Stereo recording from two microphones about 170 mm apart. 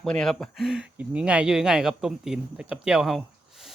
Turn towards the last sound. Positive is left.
turn(degrees=0)  # may be behind; listen again after turning